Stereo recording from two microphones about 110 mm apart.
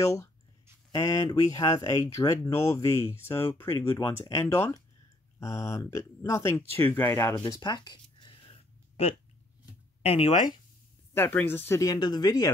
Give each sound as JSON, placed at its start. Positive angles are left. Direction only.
{"t": 0.0, "sound": "speech", "side_deg": 25}
{"t": 7.6, "sound": "a sound", "side_deg": 40}
{"t": 10.0, "sound": "speech", "side_deg": 65}
{"t": 11.1, "sound": "speech", "side_deg": 20}
{"t": 11.8, "sound": "speech", "side_deg": 35}